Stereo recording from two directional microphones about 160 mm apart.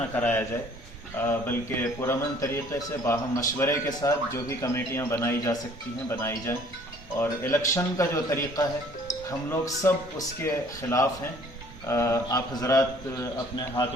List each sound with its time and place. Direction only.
0.2 s a man's voice: 10° left (ahead or behind)